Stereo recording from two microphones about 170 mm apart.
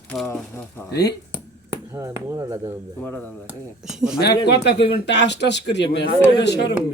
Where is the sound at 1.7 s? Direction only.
20° right (ahead or behind).